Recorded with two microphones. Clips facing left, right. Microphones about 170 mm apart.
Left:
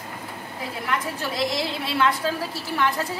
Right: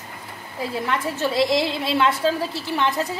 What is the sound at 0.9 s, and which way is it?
A woman's voice, 25° right (ahead or behind).